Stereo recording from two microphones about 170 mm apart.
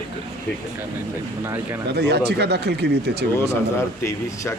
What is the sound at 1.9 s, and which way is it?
Speech, 75° right (ahead or behind).